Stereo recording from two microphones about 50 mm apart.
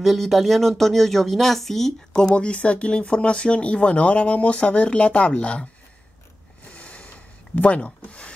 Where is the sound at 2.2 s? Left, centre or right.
Centre.